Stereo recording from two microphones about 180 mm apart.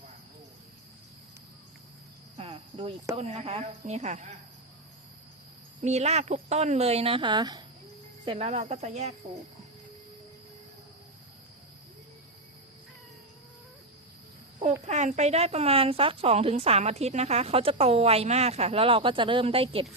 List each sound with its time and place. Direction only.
2.4 s cricket: 35° right (ahead or behind)
3.2 s a woman's voice: 35° right (ahead or behind)
5.8 s a woman's voice: 40° right (ahead or behind)
14.8 s a woman's voice: 40° right (ahead or behind)